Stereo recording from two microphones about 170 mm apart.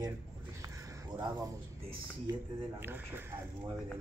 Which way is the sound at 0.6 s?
20° right (ahead or behind).